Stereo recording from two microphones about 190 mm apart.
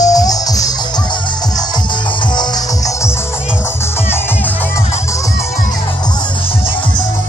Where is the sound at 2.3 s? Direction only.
20° left (ahead or behind).